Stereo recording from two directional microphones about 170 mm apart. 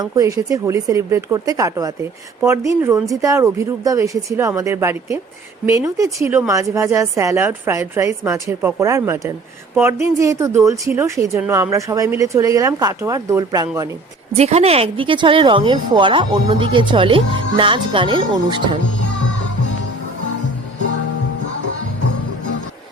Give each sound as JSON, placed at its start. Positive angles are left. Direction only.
{"t": 0.0, "sound": "a woman's voice", "side_deg": -20}
{"t": 14.3, "sound": "speech", "side_deg": -40}